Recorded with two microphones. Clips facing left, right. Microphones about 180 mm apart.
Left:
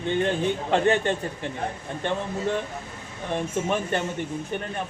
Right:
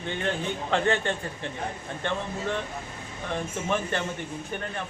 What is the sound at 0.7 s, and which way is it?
Speech, 15° left (ahead or behind).